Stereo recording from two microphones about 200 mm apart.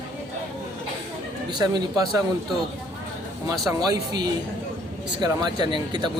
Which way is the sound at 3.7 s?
20° right (ahead or behind).